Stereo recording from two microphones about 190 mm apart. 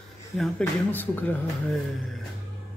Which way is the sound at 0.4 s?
10° left (ahead or behind).